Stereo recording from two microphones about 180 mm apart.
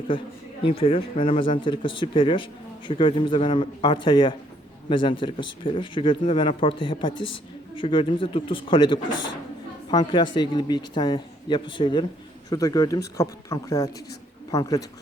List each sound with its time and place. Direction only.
0.1 s speech: 30° left (ahead or behind)